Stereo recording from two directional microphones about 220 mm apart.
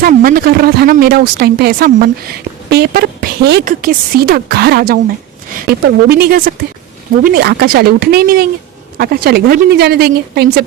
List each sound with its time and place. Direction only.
0.0 s speech: 40° right (ahead or behind)